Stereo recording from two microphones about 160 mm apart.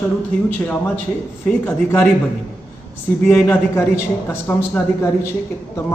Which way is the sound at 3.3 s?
15° left (ahead or behind).